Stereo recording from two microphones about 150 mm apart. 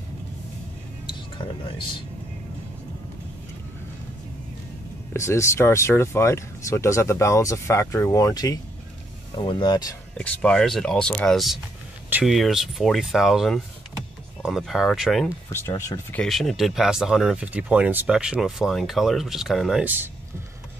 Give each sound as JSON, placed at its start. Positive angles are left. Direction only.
{"t": 1.0, "sound": "speech", "side_deg": 35}
{"t": 5.1, "sound": "speech", "side_deg": 20}
{"t": 10.1, "sound": "speech", "side_deg": 10}
{"t": 15.5, "sound": "speech", "side_deg": 20}
{"t": 16.1, "sound": "speech", "side_deg": 5}
{"t": 19.8, "sound": "speech", "side_deg": -10}